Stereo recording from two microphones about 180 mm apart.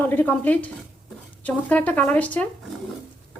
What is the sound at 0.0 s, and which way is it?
A woman's voice, 10° left (ahead or behind).